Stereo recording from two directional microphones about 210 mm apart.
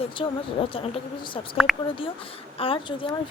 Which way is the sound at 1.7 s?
Centre (ahead or behind).